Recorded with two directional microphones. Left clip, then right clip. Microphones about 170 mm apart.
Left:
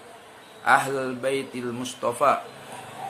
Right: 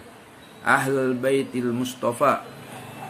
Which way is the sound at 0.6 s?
Centre (ahead or behind).